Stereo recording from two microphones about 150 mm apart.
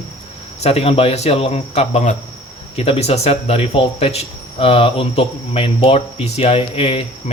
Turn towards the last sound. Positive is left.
turn(degrees=40)  # may be behind; listen again after turning